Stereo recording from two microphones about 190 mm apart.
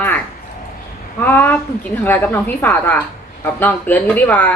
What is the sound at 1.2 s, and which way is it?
Speech, 10° left (ahead or behind).